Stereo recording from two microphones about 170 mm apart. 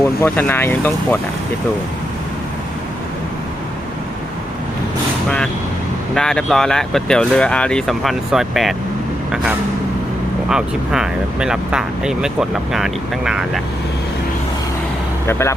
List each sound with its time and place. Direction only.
0.2 s speech: 15° left (ahead or behind)
6.1 s speech: 5° left (ahead or behind)
10.5 s speech: 5° right (ahead or behind)
15.3 s speech: 15° left (ahead or behind)